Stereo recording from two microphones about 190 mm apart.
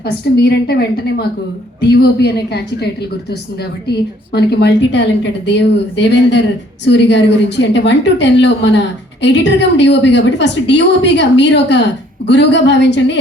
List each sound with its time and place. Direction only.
0.0 s a woman's voice: 60° left (ahead or behind)
1.9 s a woman's voice: 60° left (ahead or behind)